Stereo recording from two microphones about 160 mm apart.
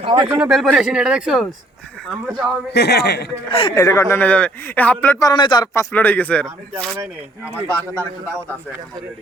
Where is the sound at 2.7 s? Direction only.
90° left.